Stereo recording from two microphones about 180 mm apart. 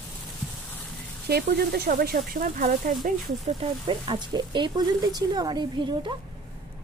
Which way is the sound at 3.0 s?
35° right (ahead or behind).